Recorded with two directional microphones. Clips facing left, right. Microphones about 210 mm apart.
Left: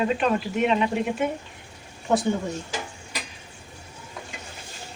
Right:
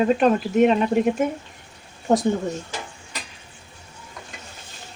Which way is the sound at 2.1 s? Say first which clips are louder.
Right 3 dB; 35° right (ahead or behind).